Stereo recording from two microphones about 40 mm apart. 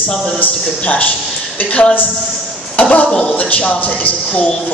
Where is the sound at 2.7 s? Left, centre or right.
Left.